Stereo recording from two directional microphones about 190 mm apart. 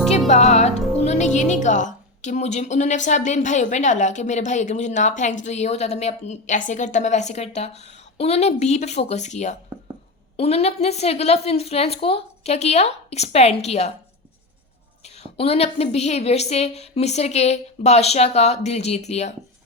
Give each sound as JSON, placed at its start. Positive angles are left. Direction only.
{"t": 0.3, "sound": "a woman's voice", "side_deg": 35}
{"t": 15.0, "sound": "a woman's voice", "side_deg": 35}